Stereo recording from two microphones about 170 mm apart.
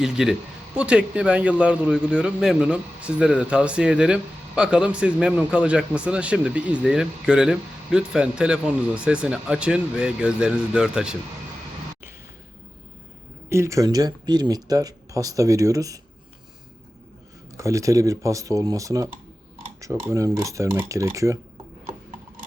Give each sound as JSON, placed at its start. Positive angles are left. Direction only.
{"t": 0.0, "sound": "speech", "side_deg": -5}
{"t": 13.5, "sound": "speech", "side_deg": -15}
{"t": 17.6, "sound": "speech", "side_deg": -20}